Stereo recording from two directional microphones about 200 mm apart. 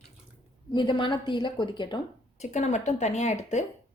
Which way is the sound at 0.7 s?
25° left (ahead or behind).